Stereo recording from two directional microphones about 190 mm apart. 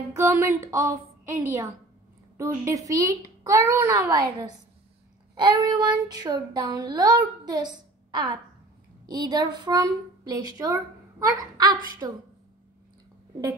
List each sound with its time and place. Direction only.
0.1 s speech: 15° right (ahead or behind)
5.3 s child singing: 25° right (ahead or behind)
9.0 s a woman's voice: 20° right (ahead or behind)
12.0 s child singing: 20° right (ahead or behind)